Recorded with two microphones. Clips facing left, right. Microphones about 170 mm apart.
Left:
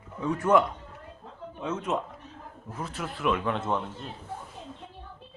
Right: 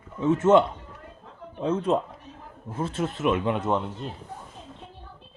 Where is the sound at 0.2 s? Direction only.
25° right (ahead or behind).